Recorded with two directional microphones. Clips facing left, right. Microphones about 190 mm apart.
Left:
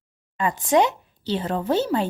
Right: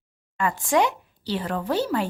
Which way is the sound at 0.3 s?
20° left (ahead or behind).